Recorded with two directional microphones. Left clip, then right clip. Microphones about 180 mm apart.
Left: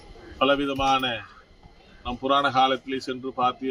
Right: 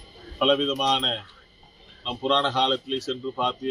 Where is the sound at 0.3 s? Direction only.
15° left (ahead or behind).